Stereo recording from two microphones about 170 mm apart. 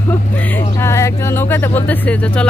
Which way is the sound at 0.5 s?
15° left (ahead or behind).